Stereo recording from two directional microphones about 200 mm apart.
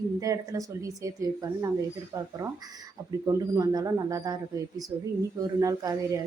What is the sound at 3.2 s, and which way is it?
Speech, 20° right (ahead or behind).